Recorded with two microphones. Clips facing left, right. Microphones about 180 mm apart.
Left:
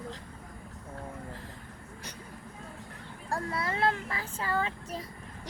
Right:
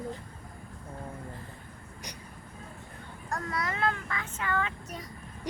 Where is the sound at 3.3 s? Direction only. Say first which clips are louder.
Left 1 dB; 30° left (ahead or behind).